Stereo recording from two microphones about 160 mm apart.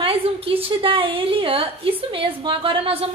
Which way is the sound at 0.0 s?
35° right (ahead or behind).